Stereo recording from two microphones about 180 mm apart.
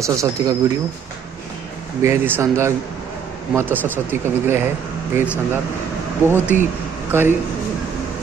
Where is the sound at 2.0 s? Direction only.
15° right (ahead or behind).